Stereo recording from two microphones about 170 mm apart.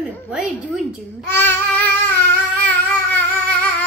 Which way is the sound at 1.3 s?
10° left (ahead or behind).